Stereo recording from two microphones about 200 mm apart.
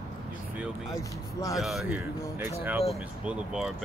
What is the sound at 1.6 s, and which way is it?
Speech, centre (ahead or behind).